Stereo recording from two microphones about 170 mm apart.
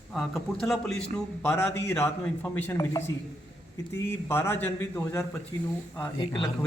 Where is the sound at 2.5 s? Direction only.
10° left (ahead or behind).